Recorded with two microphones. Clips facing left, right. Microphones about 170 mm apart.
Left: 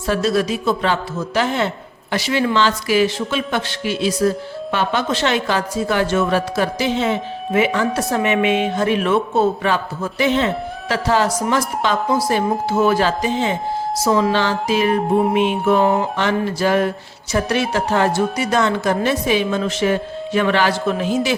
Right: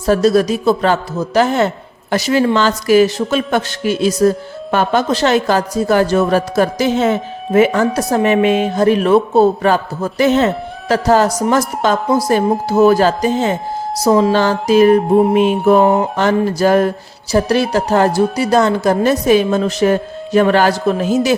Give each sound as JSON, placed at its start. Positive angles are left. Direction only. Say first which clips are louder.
{"t": 0.0, "sound": "speech", "louder": "right 6 dB", "side_deg": -40}